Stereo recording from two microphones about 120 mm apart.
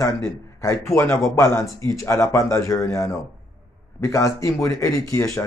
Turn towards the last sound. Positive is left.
turn(degrees=25)  # may be behind; listen again after turning